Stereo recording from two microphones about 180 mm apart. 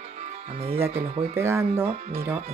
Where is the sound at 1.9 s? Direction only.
35° right (ahead or behind).